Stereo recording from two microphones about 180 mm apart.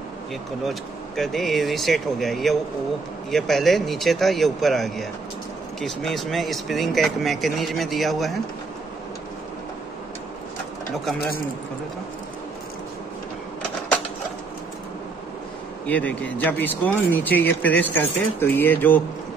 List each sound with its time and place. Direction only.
0.7 s speech: centre (ahead or behind)
11.1 s speech: 55° left (ahead or behind)
15.9 s speech: 10° left (ahead or behind)